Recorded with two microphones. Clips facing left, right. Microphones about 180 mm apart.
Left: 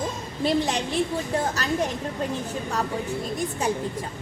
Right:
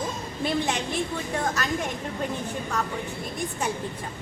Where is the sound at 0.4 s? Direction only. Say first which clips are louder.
Left 3 dB; 35° left (ahead or behind).